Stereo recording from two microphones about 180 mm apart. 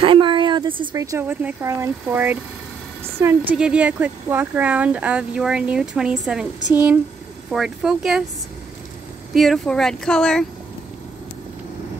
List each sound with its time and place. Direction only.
0.0 s a sound: 30° right (ahead or behind)
0.9 s speech: 15° right (ahead or behind)
9.3 s speech: centre (ahead or behind)